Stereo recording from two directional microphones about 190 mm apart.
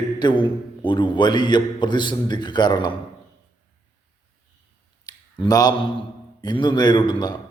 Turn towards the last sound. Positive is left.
turn(degrees=20)  # may be behind; listen again after turning